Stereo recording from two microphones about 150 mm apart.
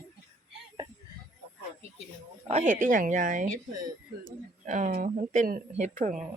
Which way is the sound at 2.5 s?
55° right (ahead or behind).